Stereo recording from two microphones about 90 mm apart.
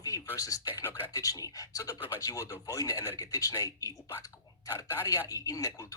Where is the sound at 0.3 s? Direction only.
40° left (ahead or behind).